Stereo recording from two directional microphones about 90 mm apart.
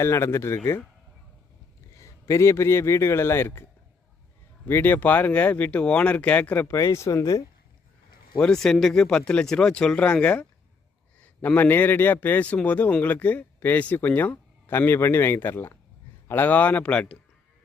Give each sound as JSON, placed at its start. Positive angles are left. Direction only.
{"t": 0.0, "sound": "a man's voice", "side_deg": 30}
{"t": 2.0, "sound": "a man's voice", "side_deg": 35}
{"t": 6.7, "sound": "a man's voice", "side_deg": 35}
{"t": 8.4, "sound": "a man's voice", "side_deg": 5}